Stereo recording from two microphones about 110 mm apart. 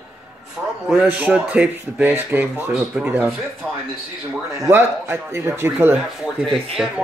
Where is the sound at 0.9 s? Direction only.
10° right (ahead or behind).